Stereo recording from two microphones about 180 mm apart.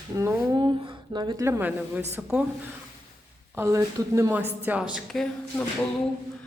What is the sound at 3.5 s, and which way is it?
A woman's voice, 15° right (ahead or behind).